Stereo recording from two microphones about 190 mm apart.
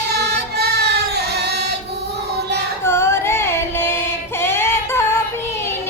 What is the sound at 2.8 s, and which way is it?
Music, 15° left (ahead or behind).